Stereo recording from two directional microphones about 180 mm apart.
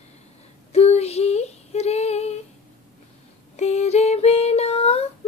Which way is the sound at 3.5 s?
40° left (ahead or behind).